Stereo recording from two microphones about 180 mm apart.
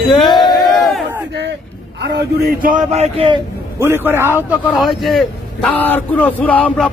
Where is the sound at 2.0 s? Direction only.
60° right (ahead or behind); by 3.4 s 30° right (ahead or behind).